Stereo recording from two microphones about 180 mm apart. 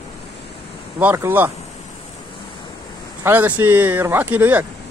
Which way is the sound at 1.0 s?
10° right (ahead or behind).